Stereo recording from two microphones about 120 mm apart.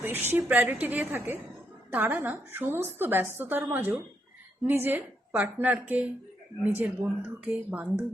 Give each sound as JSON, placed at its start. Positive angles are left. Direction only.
{"t": 0.0, "sound": "a woman's voice", "side_deg": -15}